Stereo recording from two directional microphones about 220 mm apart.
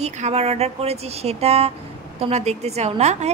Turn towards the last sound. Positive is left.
turn(degrees=-30)  # may be behind; listen again after turning